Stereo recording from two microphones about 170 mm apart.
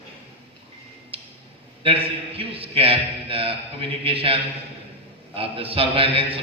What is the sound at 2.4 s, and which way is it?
A man's voice, 35° right (ahead or behind).